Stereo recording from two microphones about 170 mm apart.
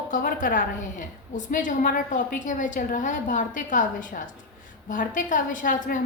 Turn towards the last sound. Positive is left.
turn(degrees=50)  # may be behind; listen again after turning